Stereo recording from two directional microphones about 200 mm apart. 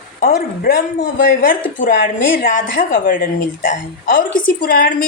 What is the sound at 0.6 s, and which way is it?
A woman's voice, 45° left (ahead or behind).